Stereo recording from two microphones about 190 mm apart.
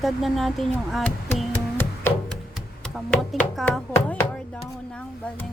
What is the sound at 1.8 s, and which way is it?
Music, 10° left (ahead or behind).